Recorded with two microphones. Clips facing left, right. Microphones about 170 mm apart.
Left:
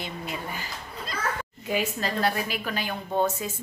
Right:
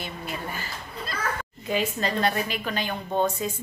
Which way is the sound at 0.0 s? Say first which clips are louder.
Even; 15° left (ahead or behind).